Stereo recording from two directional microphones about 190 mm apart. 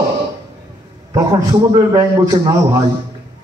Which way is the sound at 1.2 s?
20° right (ahead or behind).